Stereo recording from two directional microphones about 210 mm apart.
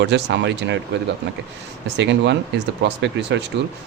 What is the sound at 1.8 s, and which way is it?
Speech, 55° right (ahead or behind).